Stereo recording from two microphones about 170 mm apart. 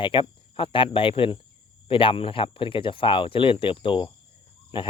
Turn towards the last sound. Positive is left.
turn(degrees=30)  # may be behind; listen again after turning